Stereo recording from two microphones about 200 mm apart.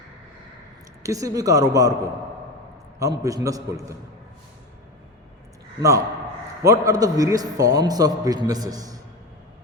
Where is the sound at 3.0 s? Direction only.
15° right (ahead or behind).